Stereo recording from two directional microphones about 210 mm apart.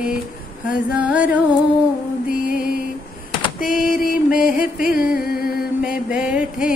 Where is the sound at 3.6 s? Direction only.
45° left (ahead or behind).